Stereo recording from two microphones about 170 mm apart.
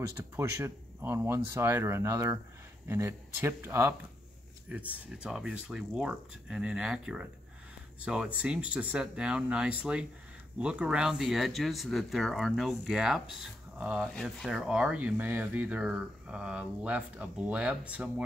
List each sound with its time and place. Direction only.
0.2 s speech: 15° right (ahead or behind)